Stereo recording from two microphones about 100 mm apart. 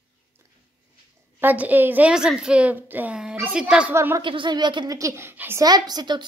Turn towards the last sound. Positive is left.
turn(degrees=-45)  # may be behind; listen again after turning